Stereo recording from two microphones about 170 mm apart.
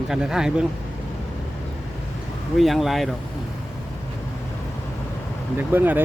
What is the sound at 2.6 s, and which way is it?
Speech, centre (ahead or behind).